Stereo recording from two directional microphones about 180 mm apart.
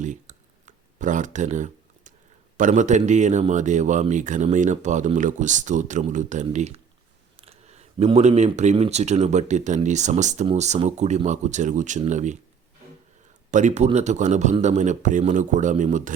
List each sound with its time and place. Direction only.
0.0 s a sound: 45° right (ahead or behind)
2.6 s speech: 45° right (ahead or behind)
13.5 s speech: 40° right (ahead or behind)